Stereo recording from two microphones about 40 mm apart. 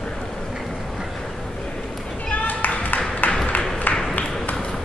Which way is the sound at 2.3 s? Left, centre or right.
Left.